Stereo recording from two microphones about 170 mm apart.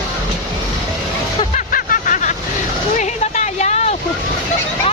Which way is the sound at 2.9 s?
45° left (ahead or behind).